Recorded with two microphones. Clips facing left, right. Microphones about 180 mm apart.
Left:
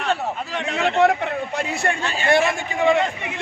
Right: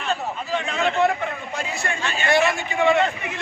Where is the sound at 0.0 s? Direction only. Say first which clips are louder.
Left 3 dB; 75° left (ahead or behind).